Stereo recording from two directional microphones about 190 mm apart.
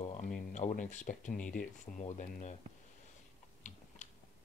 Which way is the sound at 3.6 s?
40° left (ahead or behind).